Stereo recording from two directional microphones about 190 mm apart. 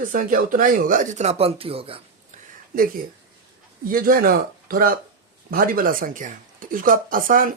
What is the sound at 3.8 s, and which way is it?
Speech, 50° right (ahead or behind).